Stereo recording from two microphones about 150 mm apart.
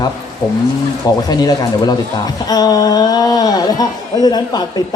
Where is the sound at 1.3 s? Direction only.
25° left (ahead or behind).